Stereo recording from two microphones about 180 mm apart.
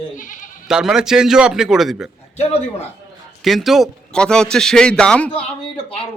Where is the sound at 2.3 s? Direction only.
35° left (ahead or behind).